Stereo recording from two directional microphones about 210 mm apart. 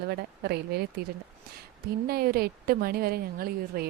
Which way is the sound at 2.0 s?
45° right (ahead or behind).